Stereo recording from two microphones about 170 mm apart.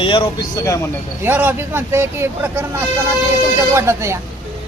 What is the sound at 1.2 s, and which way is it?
Speech, 10° right (ahead or behind).